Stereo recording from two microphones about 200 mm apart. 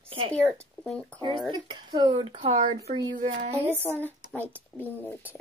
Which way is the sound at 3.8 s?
10° left (ahead or behind).